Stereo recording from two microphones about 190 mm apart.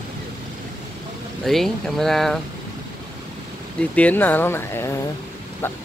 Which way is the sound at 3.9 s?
10° left (ahead or behind).